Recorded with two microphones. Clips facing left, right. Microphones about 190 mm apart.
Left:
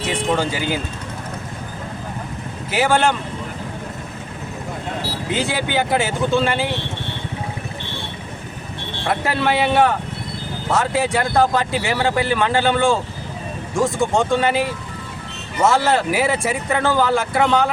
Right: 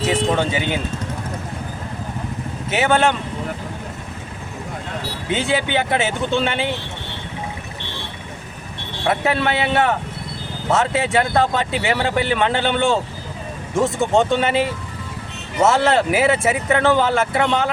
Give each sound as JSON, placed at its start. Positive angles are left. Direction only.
{"t": 0.1, "sound": "speech", "side_deg": 0}
{"t": 2.6, "sound": "speech", "side_deg": 0}
{"t": 5.3, "sound": "speech", "side_deg": 0}
{"t": 9.0, "sound": "speech", "side_deg": 0}